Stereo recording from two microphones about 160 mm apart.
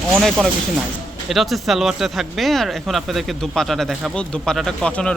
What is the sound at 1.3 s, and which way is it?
Speech, centre (ahead or behind).